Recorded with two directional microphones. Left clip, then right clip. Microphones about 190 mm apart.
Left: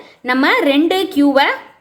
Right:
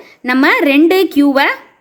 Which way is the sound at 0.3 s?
35° right (ahead or behind).